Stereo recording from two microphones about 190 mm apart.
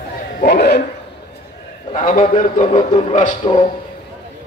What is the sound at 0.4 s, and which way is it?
Speech, 55° left (ahead or behind).